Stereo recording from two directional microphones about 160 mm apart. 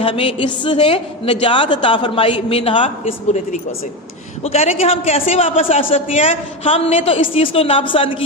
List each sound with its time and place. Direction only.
0.0 s a man's voice: 35° left (ahead or behind)
4.4 s a man's voice: 40° left (ahead or behind)